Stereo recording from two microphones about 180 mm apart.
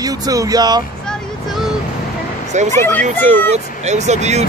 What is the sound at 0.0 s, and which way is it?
Speech, 20° right (ahead or behind).